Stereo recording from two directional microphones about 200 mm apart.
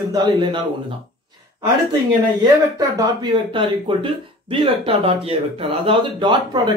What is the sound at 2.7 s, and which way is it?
Speech, 20° right (ahead or behind).